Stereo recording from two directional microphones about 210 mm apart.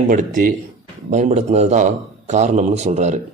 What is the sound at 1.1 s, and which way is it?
A man's voice, 35° right (ahead or behind).